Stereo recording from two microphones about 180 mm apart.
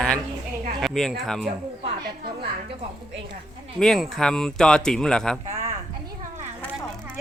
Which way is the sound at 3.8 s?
Centre (ahead or behind).